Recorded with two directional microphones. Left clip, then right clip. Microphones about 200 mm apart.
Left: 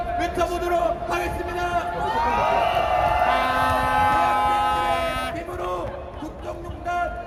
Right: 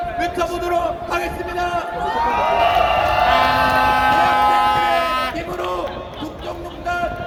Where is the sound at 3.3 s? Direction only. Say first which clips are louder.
Right 6 dB; 5° left (ahead or behind).